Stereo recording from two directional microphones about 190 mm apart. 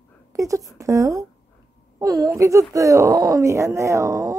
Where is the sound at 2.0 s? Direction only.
20° right (ahead or behind).